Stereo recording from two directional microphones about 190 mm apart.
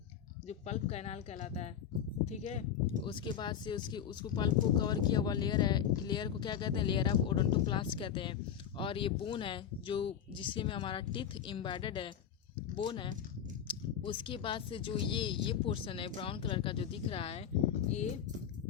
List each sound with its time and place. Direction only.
0.4 s speech: 35° left (ahead or behind)
3.1 s speech: 25° left (ahead or behind)